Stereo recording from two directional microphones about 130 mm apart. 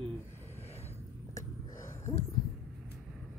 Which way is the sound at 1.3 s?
20° left (ahead or behind).